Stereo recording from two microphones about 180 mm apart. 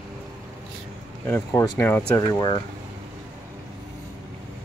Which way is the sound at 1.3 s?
10° left (ahead or behind).